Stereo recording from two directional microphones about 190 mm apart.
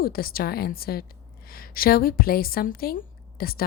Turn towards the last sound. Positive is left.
turn(degrees=50)  # may be behind; listen again after turning